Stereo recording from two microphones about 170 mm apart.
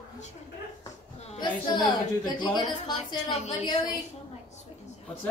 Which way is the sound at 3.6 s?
25° left (ahead or behind).